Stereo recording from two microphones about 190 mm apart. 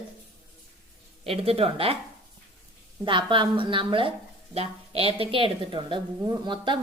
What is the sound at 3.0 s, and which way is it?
A woman's voice, 25° right (ahead or behind).